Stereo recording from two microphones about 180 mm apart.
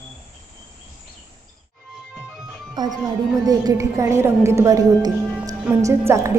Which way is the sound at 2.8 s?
25° right (ahead or behind).